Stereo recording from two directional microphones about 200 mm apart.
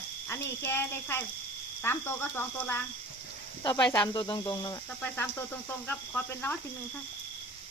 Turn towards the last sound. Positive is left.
turn(degrees=10)  # may be behind; listen again after turning